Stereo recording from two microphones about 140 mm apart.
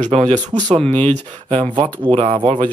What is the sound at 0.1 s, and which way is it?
Speech, 50° right (ahead or behind).